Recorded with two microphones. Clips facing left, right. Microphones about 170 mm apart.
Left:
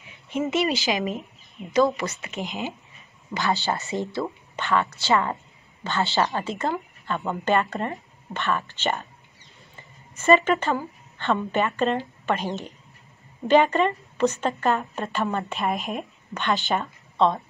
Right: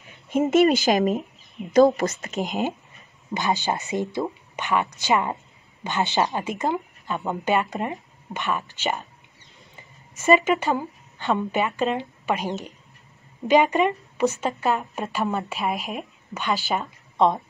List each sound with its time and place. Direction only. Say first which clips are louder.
0.3 s speech: right 6 dB; 50° right (ahead or behind)
3.3 s speech: right 1 dB; 15° right (ahead or behind)
10.1 s a woman's voice: even; 10° right (ahead or behind)
17.2 s a woman's voice: right 1 dB; 15° right (ahead or behind)